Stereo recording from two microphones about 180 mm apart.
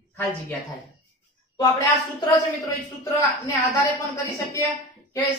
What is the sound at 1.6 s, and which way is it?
A man's voice, 20° left (ahead or behind).